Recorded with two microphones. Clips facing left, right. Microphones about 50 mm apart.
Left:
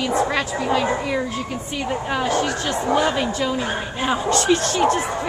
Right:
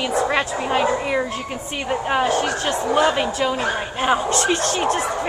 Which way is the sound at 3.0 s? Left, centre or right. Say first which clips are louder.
Right 2 dB; centre.